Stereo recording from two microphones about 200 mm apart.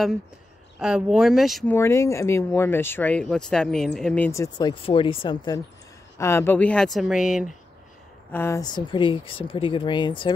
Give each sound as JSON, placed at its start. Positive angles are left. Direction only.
{"t": 0.7, "sound": "speech", "side_deg": -5}
{"t": 1.8, "sound": "speech", "side_deg": 15}
{"t": 8.3, "sound": "speech", "side_deg": 10}